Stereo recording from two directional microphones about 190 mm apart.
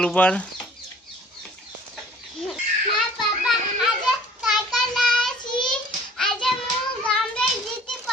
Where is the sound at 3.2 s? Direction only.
Centre (ahead or behind).